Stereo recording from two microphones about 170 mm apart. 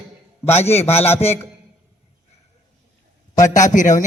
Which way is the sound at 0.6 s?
40° left (ahead or behind).